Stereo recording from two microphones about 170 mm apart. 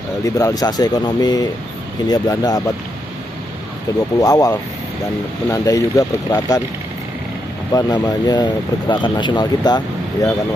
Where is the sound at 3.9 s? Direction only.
20° left (ahead or behind).